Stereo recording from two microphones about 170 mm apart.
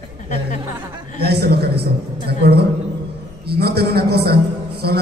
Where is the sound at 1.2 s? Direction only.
70° right (ahead or behind).